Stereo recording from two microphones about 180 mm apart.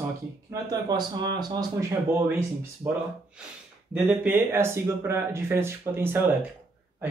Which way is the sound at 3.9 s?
10° right (ahead or behind).